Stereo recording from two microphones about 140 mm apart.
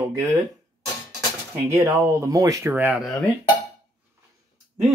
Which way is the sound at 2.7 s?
10° right (ahead or behind).